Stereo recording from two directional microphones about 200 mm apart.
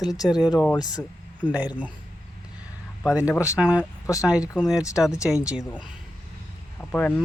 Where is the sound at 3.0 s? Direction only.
5° right (ahead or behind).